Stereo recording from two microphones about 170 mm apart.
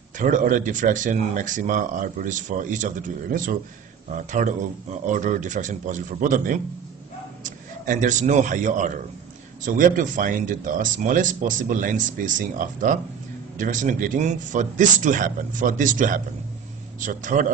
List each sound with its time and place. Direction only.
0.2 s speech: 50° right (ahead or behind)